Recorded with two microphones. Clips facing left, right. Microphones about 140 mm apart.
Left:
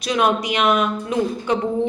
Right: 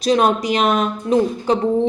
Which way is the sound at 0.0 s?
35° right (ahead or behind).